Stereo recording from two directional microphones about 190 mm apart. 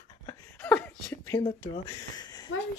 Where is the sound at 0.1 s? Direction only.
20° left (ahead or behind).